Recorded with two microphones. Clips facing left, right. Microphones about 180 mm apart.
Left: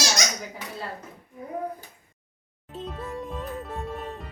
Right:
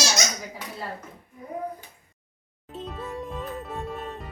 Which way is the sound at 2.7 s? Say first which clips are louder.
Even; centre (ahead or behind).